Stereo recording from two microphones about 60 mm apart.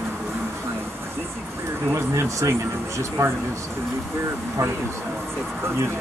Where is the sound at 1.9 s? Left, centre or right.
Right.